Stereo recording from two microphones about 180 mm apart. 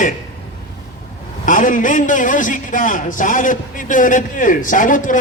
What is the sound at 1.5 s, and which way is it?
A man's voice, 50° left (ahead or behind).